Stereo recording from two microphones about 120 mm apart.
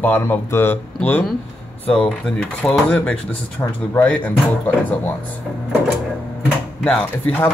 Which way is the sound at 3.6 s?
20° left (ahead or behind).